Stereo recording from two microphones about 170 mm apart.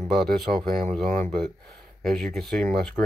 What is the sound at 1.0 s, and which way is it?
Speech, 50° right (ahead or behind).